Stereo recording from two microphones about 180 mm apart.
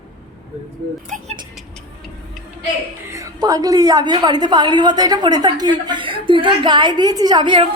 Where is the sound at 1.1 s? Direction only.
45° right (ahead or behind).